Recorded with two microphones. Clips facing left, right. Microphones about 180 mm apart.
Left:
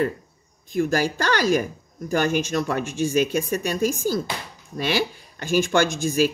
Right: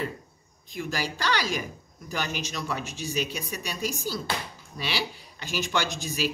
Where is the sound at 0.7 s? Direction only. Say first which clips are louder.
Left 10 dB; 45° left (ahead or behind).